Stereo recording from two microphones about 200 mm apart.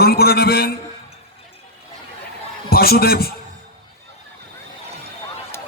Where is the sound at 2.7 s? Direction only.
50° left (ahead or behind).